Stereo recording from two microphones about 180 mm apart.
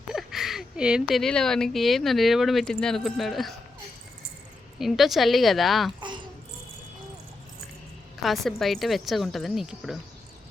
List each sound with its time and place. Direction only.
0.1 s speech: centre (ahead or behind)
4.8 s speech: centre (ahead or behind)
6.0 s a sound: 25° right (ahead or behind)
8.2 s speech: centre (ahead or behind)